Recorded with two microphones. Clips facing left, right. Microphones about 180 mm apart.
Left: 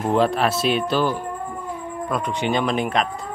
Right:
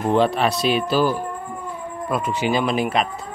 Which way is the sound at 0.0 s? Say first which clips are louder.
Right 1 dB; centre (ahead or behind).